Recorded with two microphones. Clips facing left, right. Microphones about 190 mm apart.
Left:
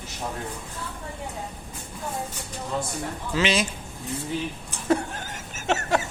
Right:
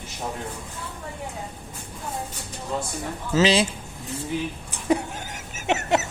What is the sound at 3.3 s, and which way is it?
Speech, 35° right (ahead or behind).